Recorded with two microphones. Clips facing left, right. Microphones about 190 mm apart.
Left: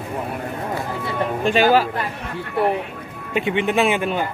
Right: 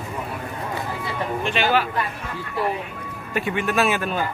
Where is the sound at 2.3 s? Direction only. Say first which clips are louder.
Left 5 dB; 60° left (ahead or behind).